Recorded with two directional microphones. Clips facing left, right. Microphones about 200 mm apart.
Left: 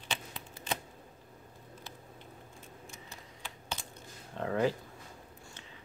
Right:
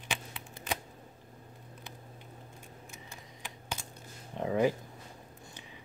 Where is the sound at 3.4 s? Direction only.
15° right (ahead or behind).